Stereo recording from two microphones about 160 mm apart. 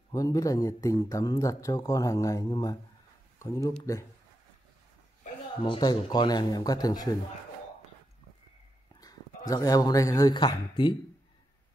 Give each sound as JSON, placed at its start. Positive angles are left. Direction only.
{"t": 0.1, "sound": "a man's voice", "side_deg": 20}
{"t": 5.6, "sound": "a man's voice", "side_deg": 30}
{"t": 9.5, "sound": "a man's voice", "side_deg": 20}